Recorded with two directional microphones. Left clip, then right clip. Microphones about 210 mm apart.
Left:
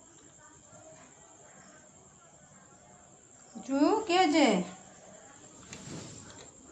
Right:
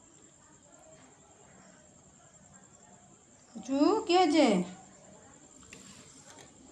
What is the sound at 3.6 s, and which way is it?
Speech, 10° right (ahead or behind).